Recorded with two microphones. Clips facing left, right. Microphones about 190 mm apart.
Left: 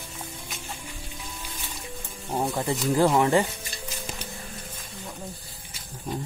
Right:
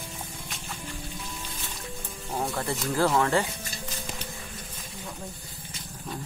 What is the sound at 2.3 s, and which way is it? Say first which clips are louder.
Speech: left 3 dB; 15° left (ahead or behind).